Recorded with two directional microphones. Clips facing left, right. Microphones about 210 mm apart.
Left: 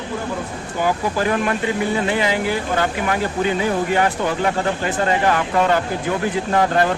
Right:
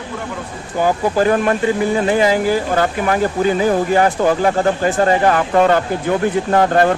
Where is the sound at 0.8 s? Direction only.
45° right (ahead or behind).